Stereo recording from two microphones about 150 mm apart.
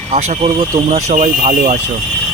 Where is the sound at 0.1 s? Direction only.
50° right (ahead or behind).